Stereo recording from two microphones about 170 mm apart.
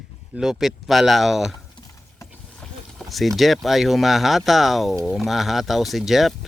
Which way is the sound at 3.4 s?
Centre (ahead or behind).